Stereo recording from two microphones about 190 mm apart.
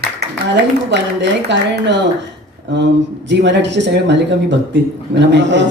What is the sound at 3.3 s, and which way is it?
Speech, 65° right (ahead or behind).